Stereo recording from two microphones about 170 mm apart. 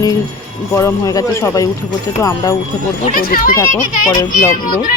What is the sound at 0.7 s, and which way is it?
Speech, 15° left (ahead or behind).